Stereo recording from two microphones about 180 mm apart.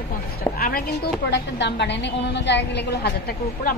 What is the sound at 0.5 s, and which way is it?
Speech, 50° left (ahead or behind).